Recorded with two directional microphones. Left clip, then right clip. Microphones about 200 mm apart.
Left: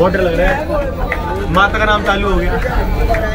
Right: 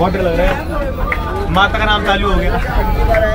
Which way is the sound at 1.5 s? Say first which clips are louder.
Left 1 dB; 5° right (ahead or behind).